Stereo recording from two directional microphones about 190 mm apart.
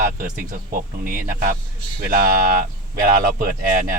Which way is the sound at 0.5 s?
45° right (ahead or behind).